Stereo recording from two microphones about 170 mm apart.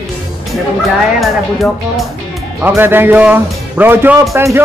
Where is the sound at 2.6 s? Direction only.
10° right (ahead or behind).